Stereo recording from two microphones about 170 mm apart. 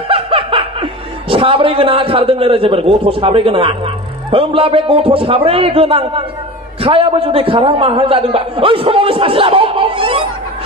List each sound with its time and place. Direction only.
0.1 s snicker: 30° right (ahead or behind)
1.3 s a man's voice: 30° right (ahead or behind)